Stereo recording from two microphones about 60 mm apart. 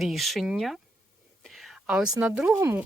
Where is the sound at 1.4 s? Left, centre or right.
Centre.